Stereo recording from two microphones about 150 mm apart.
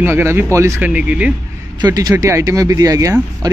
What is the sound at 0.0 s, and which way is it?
Speech, 15° right (ahead or behind).